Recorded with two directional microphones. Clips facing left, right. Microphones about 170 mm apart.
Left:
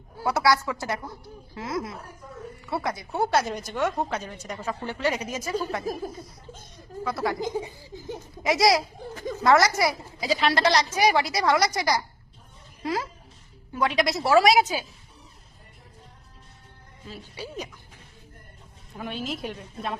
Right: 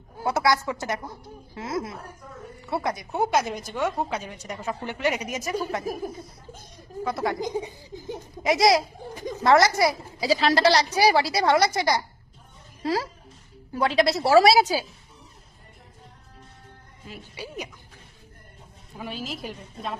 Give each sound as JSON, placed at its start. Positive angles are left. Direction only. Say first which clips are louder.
{"t": 0.2, "sound": "a woman's voice", "louder": "even", "side_deg": -20}
{"t": 10.2, "sound": "a woman's voice", "louder": "right 3 dB", "side_deg": -35}
{"t": 17.1, "sound": "a woman's voice", "louder": "left 1 dB", "side_deg": -15}
{"t": 18.9, "sound": "a woman's voice", "louder": "left 2 dB", "side_deg": -5}